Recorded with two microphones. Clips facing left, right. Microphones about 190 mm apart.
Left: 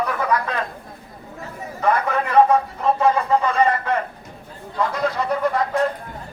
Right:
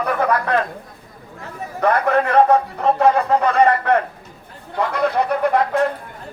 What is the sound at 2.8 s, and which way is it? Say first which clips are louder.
Speech: right 3 dB; 65° right (ahead or behind).